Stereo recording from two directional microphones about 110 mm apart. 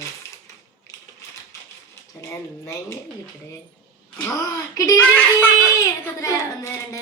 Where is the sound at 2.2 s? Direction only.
20° left (ahead or behind).